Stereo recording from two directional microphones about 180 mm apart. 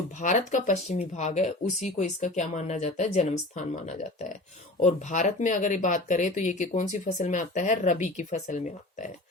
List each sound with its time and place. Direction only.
0.2 s speech: 45° left (ahead or behind)